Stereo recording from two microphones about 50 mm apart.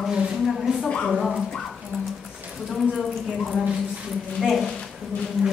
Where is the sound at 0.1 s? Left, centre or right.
Centre.